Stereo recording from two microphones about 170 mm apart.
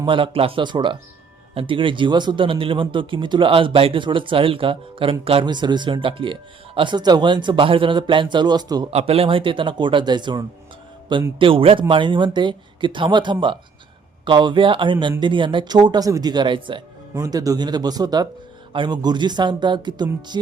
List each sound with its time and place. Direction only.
0.0 s speech: 30° right (ahead or behind)
8.9 s speech: 35° right (ahead or behind)
17.2 s speech: 20° right (ahead or behind)